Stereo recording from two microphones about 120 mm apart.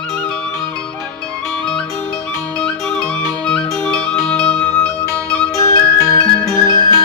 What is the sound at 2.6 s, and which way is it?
Music, 5° left (ahead or behind).